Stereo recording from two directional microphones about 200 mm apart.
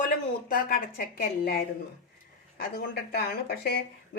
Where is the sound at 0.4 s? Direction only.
45° left (ahead or behind).